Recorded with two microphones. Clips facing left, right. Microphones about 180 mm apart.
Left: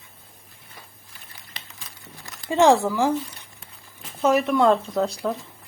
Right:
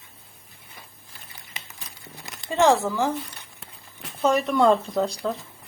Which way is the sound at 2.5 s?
15° left (ahead or behind).